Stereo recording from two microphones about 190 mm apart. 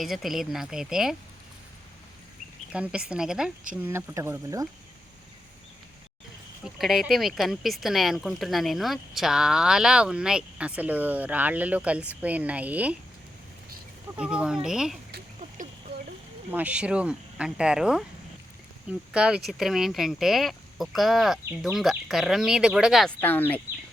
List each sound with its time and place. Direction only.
0.0 s speech: centre (ahead or behind)
2.7 s speech: 5° right (ahead or behind)
6.7 s speech: centre (ahead or behind)
14.2 s speech: 5° right (ahead or behind)
15.4 s a sound: 40° right (ahead or behind)
16.5 s speech: 10° right (ahead or behind)
23.2 s speech: 10° left (ahead or behind)